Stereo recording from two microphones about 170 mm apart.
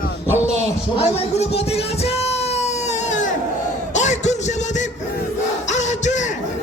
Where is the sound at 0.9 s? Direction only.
35° left (ahead or behind).